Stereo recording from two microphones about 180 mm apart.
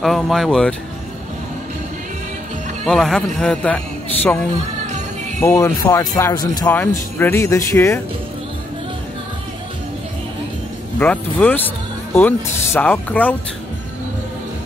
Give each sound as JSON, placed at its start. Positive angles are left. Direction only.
{"t": 0.0, "sound": "speech", "side_deg": 0}
{"t": 2.8, "sound": "speech", "side_deg": 5}
{"t": 6.7, "sound": "speech", "side_deg": 10}
{"t": 11.0, "sound": "speech", "side_deg": 10}